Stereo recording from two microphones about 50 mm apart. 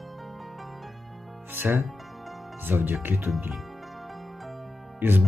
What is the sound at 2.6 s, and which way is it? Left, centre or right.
Speech, right.